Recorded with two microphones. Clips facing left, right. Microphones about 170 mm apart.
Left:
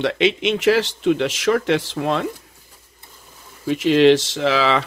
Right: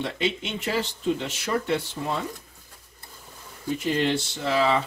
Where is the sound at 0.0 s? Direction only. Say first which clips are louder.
Left 9 dB; 80° left.